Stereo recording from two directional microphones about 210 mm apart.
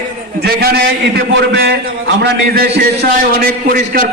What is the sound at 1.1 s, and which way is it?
A man's voice, 50° right (ahead or behind).